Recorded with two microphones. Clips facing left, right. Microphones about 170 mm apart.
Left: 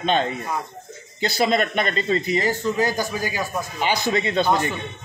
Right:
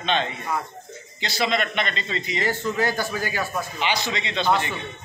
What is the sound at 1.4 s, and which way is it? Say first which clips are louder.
A man's voice: left 3 dB; 45° left (ahead or behind).